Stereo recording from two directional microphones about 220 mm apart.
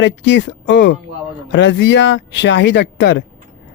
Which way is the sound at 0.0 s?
55° left (ahead or behind).